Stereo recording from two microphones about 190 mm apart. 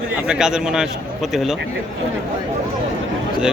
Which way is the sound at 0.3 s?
5° right (ahead or behind).